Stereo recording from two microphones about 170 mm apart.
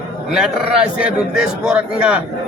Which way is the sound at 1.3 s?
5° right (ahead or behind).